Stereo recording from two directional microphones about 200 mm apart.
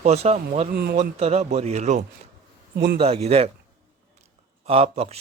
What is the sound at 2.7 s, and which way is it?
Speech, 55° right (ahead or behind).